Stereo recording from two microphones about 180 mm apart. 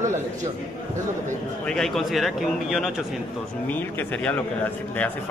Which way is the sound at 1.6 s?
5° left (ahead or behind).